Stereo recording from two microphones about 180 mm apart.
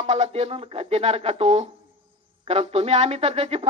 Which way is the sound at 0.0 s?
40° right (ahead or behind).